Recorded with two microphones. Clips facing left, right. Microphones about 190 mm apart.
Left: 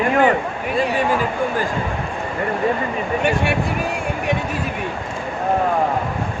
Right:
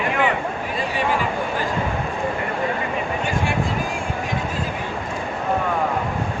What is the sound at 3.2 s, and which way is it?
Speech, 65° left (ahead or behind).